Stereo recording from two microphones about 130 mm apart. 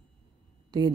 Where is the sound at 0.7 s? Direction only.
30° right (ahead or behind).